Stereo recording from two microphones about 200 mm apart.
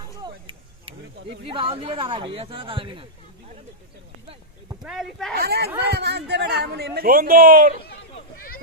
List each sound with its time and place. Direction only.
0.2 s vehicle: 25° right (ahead or behind)
1.5 s speech: 25° right (ahead or behind)
4.8 s speech: centre (ahead or behind)
5.3 s speech: 55° right (ahead or behind)